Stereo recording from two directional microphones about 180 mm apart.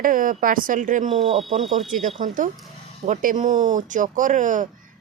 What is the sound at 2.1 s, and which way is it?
Speech, 45° right (ahead or behind).